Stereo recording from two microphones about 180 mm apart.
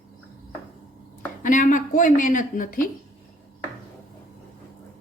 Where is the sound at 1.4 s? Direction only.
45° left (ahead or behind).